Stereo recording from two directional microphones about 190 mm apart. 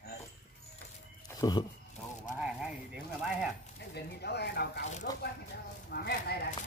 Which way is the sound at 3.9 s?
60° left (ahead or behind).